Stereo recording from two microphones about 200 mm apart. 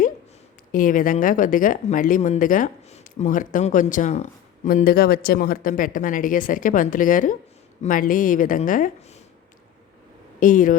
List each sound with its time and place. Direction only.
0.7 s speech: 45° left (ahead or behind)
10.4 s speech: 40° left (ahead or behind)